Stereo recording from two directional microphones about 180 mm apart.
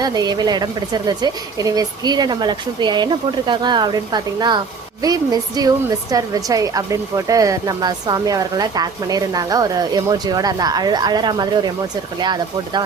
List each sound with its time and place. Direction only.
0.0 s a woman's voice: 20° right (ahead or behind)